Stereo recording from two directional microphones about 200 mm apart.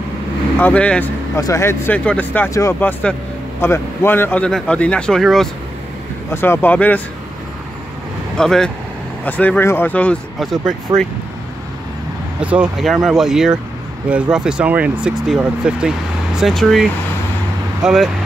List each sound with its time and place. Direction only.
0.6 s speech: 5° left (ahead or behind)
6.3 s speech: 10° left (ahead or behind)
8.4 s speech: 5° left (ahead or behind)
12.4 s speech: 5° right (ahead or behind)
17.8 s speech: 5° right (ahead or behind)